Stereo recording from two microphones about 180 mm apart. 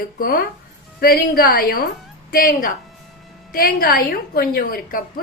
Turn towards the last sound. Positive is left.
turn(degrees=50)  # may be behind; listen again after turning